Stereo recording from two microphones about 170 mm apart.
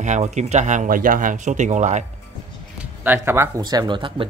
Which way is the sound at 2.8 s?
10° right (ahead or behind).